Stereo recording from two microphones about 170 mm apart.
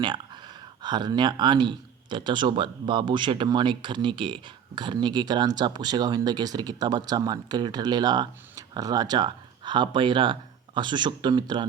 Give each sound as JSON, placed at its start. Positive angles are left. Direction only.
{"t": 0.0, "sound": "speech", "side_deg": -25}